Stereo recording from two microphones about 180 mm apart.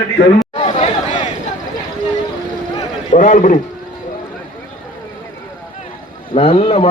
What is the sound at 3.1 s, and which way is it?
Speech, 45° left (ahead or behind).